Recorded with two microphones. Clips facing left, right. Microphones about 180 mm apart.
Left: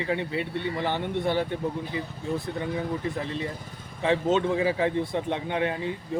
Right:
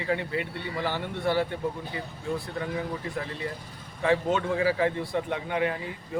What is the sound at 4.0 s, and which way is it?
A man's voice, 20° left (ahead or behind).